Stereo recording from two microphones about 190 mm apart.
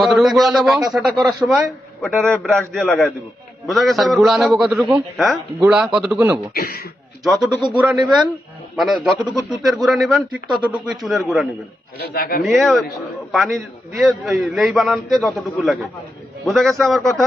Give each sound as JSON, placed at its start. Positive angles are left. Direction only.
{"t": 0.0, "sound": "a man's voice", "side_deg": 0}
{"t": 6.5, "sound": "a man's voice", "side_deg": 55}
{"t": 7.3, "sound": "a man's voice", "side_deg": 0}
{"t": 11.9, "sound": "a man's voice", "side_deg": 55}
{"t": 12.4, "sound": "a man's voice", "side_deg": 0}